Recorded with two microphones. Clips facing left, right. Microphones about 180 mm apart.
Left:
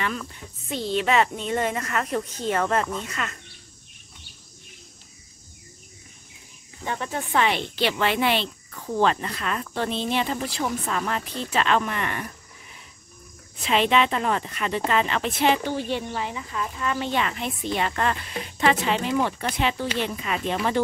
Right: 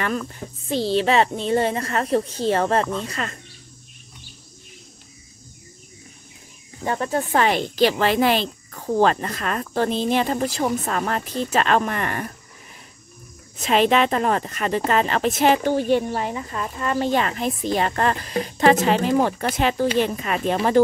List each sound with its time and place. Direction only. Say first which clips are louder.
0.0 s speech: right 4 dB; 45° right (ahead or behind)
0.8 s speech: right 3 dB; 30° right (ahead or behind)
6.8 s speech: right 6 dB; 40° right (ahead or behind)
13.6 s speech: right 3 dB; 45° right (ahead or behind)